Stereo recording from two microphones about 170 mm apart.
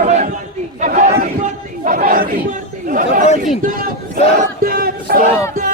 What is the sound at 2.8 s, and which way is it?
Chatter, 55° right (ahead or behind).